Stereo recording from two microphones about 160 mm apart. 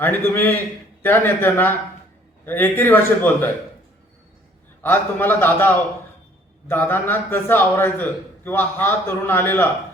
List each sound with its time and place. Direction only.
0.0 s a man's voice: 15° left (ahead or behind)
4.8 s a man's voice: 10° left (ahead or behind)